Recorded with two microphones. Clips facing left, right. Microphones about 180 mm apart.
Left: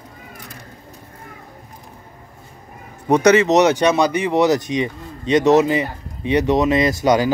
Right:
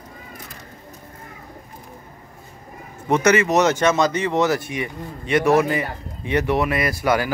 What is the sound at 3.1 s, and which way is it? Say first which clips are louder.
Speech: left 4 dB; 15° left (ahead or behind).